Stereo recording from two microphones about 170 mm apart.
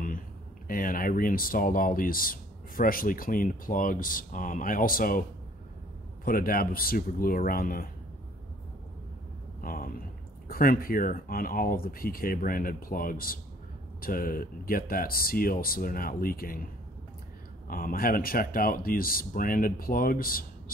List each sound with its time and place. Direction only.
0.7 s speech: 55° left (ahead or behind)
6.2 s speech: 55° left (ahead or behind)
9.6 s a sound: 55° left (ahead or behind)
10.5 s speech: 55° left (ahead or behind)
17.6 s speech: 55° left (ahead or behind)